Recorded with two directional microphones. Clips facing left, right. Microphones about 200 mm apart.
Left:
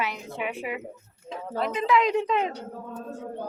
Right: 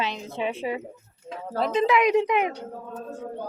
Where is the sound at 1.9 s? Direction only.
15° right (ahead or behind).